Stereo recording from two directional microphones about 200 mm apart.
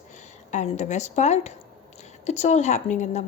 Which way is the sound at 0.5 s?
35° left (ahead or behind).